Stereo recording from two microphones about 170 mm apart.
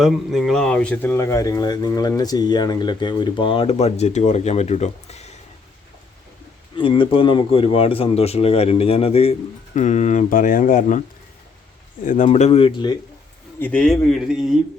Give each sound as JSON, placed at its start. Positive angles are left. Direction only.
{"t": 0.0, "sound": "speech", "side_deg": 0}
{"t": 6.7, "sound": "speech", "side_deg": 30}
{"t": 12.0, "sound": "speech", "side_deg": 45}
{"t": 13.6, "sound": "speech", "side_deg": 10}